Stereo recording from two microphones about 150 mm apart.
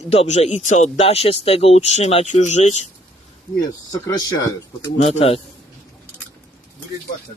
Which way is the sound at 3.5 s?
25° left (ahead or behind).